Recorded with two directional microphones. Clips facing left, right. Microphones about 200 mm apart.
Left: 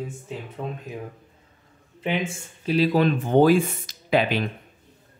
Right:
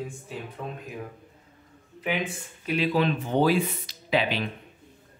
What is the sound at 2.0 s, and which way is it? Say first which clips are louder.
Speech: left 3 dB; 25° left (ahead or behind).